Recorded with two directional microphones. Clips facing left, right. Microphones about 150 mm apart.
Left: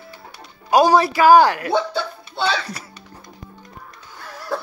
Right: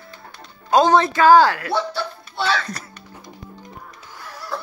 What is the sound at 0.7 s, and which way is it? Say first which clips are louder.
A woman's voice: left 1 dB; 10° left (ahead or behind).